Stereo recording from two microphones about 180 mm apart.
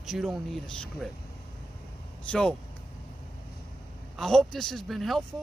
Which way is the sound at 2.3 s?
5° left (ahead or behind).